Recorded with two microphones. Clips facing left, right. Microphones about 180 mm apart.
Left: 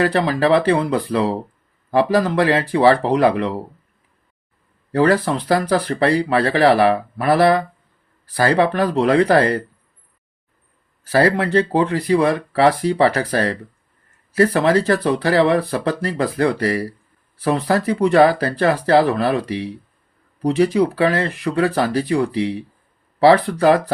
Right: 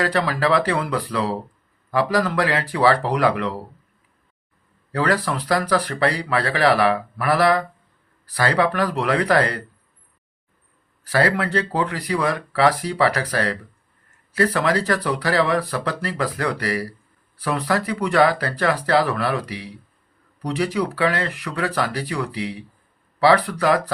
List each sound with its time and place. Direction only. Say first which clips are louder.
0.0 s speech: left 4 dB; 25° left (ahead or behind)
4.9 s speech: left 6 dB; 25° left (ahead or behind)
11.0 s speech: left 4 dB; 25° left (ahead or behind)